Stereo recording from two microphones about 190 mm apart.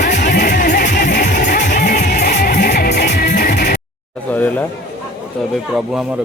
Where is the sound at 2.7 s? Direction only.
60° left (ahead or behind).